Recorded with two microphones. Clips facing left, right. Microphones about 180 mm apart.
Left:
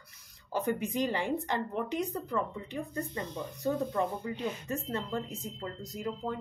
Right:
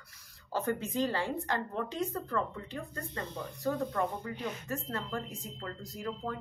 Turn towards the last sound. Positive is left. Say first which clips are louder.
# left 2 dB
turn(degrees=20)  # may be behind; listen again after turning